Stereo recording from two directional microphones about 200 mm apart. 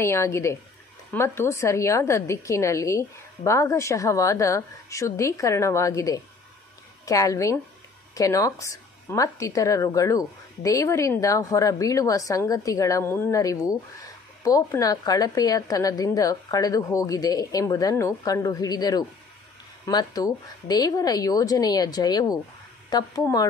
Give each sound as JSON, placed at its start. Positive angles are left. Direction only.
{"t": 0.0, "sound": "a woman's voice", "side_deg": 15}